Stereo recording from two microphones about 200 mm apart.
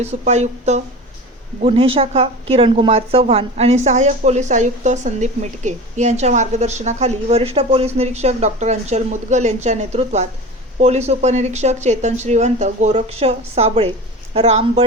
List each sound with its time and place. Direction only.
0.0 s a woman's voice: 35° right (ahead or behind)